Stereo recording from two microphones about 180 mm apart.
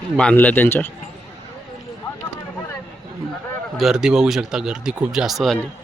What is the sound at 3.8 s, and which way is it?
Speech, 5° right (ahead or behind).